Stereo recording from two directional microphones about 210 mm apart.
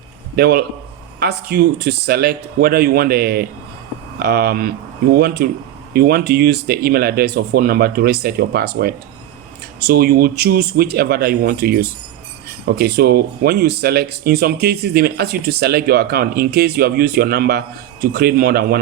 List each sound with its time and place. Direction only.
0.3 s speech: 50° right (ahead or behind)